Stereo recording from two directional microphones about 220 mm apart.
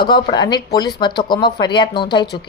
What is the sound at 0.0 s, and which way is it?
A woman's voice, 20° left (ahead or behind).